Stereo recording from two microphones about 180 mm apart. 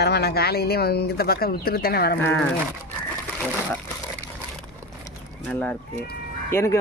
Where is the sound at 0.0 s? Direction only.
65° left (ahead or behind).